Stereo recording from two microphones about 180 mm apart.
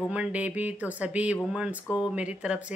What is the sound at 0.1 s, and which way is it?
Speech, 5° right (ahead or behind).